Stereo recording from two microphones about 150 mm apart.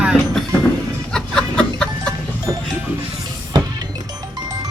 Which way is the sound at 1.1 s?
5° left (ahead or behind).